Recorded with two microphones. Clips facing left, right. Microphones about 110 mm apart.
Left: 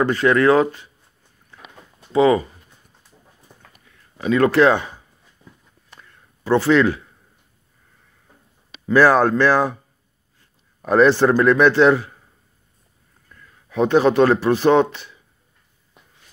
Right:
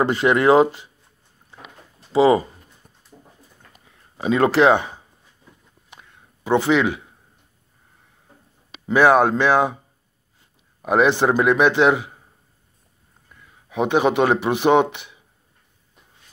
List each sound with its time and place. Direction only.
0.0 s speech: 25° right (ahead or behind)
2.1 s speech: 30° right (ahead or behind)
3.7 s a sound: 25° right (ahead or behind)
8.8 s a man's voice: 15° right (ahead or behind)
10.8 s a man's voice: 10° right (ahead or behind)
13.3 s speech: 15° right (ahead or behind)